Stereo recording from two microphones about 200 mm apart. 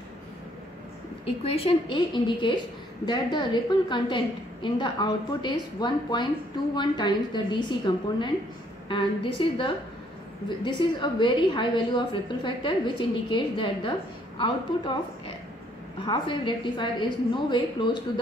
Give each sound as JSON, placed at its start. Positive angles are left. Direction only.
{"t": 1.4, "sound": "a woman's voice", "side_deg": 30}